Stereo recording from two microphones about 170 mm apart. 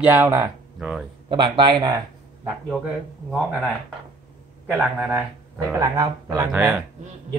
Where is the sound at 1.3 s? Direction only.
30° right (ahead or behind).